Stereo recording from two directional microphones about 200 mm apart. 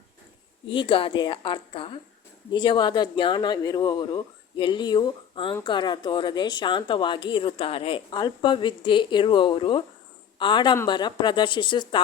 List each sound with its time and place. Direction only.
0.7 s speech: 25° left (ahead or behind)